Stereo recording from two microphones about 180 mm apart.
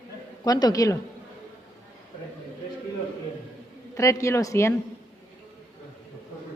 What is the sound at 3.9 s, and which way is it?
Speech, 15° left (ahead or behind).